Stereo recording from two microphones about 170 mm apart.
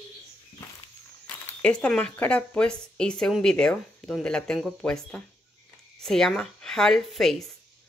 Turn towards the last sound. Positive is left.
turn(degrees=0)  # may be behind; listen again after turning